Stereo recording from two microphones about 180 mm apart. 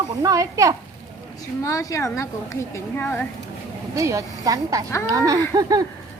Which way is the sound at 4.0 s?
15° right (ahead or behind).